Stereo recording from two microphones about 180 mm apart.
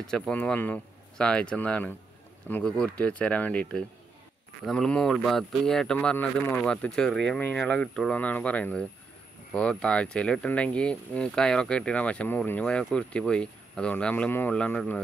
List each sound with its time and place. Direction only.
0.0 s speech: 5° left (ahead or behind)